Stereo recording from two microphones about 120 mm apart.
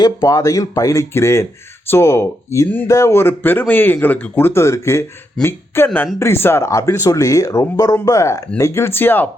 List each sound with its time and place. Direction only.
0.0 s speech: 30° left (ahead or behind); by 9.3 s 15° left (ahead or behind)